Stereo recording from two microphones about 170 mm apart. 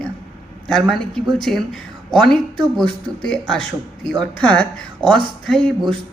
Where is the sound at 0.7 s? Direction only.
Centre (ahead or behind).